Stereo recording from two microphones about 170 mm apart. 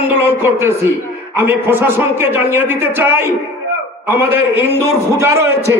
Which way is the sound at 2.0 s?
10° right (ahead or behind).